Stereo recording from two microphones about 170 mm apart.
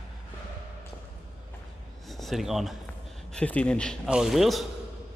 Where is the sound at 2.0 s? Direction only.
Centre (ahead or behind).